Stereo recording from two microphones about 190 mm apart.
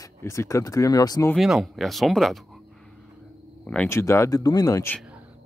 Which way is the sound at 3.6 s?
5° left (ahead or behind).